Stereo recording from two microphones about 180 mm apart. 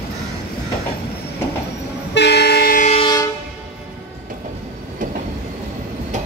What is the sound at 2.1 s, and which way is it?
Vehicle, 65° left (ahead or behind).